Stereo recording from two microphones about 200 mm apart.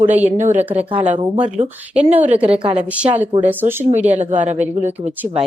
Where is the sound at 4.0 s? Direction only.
35° right (ahead or behind).